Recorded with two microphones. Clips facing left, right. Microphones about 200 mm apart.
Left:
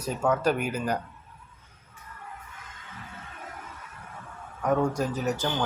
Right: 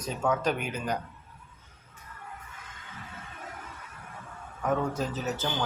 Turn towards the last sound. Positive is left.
turn(degrees=10)  # may be behind; listen again after turning